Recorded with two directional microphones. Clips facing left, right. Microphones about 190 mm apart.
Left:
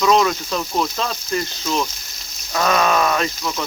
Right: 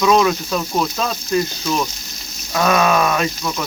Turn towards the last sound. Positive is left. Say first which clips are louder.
# right 1 dB
turn(degrees=0)  # may be behind; listen again after turning